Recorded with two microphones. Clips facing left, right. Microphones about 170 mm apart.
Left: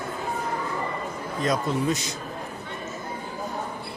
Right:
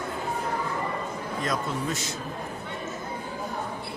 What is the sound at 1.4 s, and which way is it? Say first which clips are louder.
Speech: left 6 dB; 20° left (ahead or behind).